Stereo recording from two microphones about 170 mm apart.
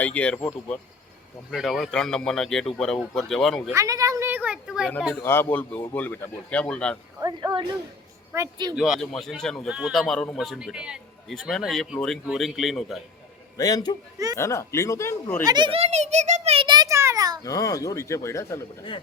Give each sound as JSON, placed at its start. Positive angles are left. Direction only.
{"t": 0.0, "sound": "a man's voice", "side_deg": 10}
{"t": 1.5, "sound": "speech", "side_deg": 0}
{"t": 3.7, "sound": "speech", "side_deg": -20}
{"t": 5.1, "sound": "a man's voice", "side_deg": 15}
{"t": 7.2, "sound": "speech", "side_deg": -25}
{"t": 8.7, "sound": "speech", "side_deg": -5}
{"t": 13.6, "sound": "a man's voice", "side_deg": 20}
{"t": 15.4, "sound": "a child's voice", "side_deg": -25}
{"t": 17.4, "sound": "a man's voice", "side_deg": 20}